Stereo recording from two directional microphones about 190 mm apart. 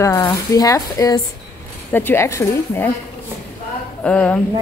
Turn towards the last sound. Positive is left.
turn(degrees=5)  # may be behind; listen again after turning